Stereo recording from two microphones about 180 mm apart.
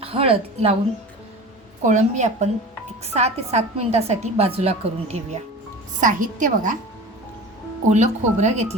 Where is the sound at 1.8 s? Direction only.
45° right (ahead or behind).